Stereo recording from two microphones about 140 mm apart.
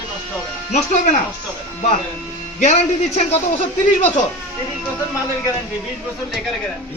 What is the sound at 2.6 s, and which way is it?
Speech, 55° left (ahead or behind).